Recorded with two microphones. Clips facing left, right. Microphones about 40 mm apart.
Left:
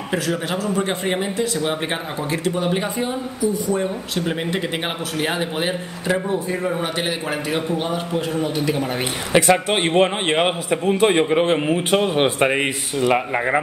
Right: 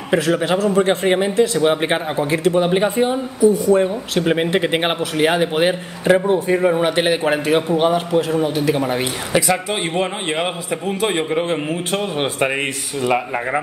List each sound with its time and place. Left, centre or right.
0.1 s speech: right
3.6 s speech: right
4.2 s a man's voice: right
9.3 s speech: left
9.7 s speech: left
10.7 s speech: centre